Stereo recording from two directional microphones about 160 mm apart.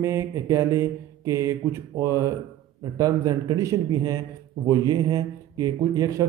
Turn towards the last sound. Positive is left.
turn(degrees=-25)  # may be behind; listen again after turning